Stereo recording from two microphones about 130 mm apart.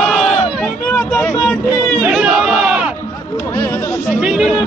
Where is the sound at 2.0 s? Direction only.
5° right (ahead or behind).